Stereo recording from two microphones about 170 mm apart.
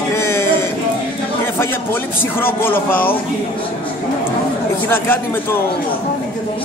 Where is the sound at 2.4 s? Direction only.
10° left (ahead or behind).